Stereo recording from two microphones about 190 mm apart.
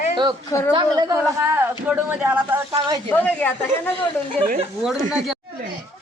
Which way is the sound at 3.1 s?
10° left (ahead or behind).